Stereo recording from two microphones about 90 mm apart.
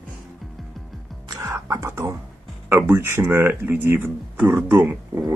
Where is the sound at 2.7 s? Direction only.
25° right (ahead or behind).